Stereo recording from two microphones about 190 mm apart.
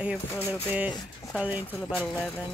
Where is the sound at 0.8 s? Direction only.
20° left (ahead or behind).